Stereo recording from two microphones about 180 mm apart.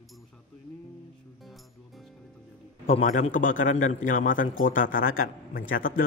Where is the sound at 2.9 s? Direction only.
45° left (ahead or behind).